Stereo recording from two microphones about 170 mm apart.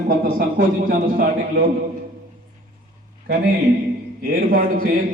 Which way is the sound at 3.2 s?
60° right (ahead or behind).